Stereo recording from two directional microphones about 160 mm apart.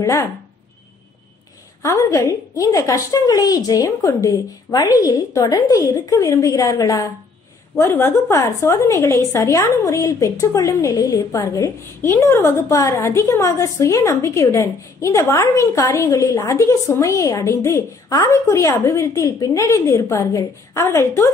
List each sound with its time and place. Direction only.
0.0 s a woman's voice: 20° left (ahead or behind)
1.8 s a woman's voice: 20° left (ahead or behind)